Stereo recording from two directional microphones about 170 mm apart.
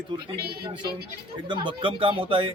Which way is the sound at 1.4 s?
25° right (ahead or behind).